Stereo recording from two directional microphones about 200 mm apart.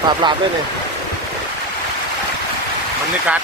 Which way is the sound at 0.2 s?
20° right (ahead or behind).